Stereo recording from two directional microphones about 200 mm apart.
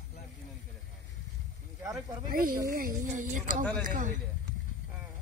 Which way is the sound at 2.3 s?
45° right (ahead or behind).